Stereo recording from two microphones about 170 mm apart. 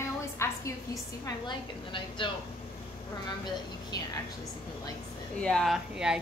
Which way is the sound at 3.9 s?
25° left (ahead or behind).